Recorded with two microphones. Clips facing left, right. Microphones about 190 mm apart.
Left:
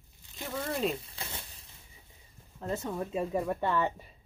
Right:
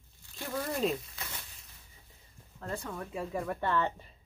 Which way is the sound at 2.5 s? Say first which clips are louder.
Left 5 dB; 20° left (ahead or behind).